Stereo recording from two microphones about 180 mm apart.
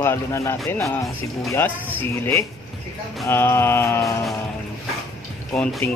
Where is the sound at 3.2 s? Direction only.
10° left (ahead or behind).